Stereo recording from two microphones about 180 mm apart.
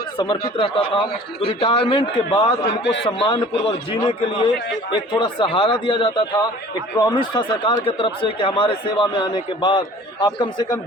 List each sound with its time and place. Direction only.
0.5 s a man's voice: 30° left (ahead or behind)